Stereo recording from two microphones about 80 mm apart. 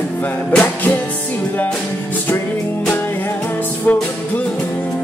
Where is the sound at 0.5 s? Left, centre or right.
Left.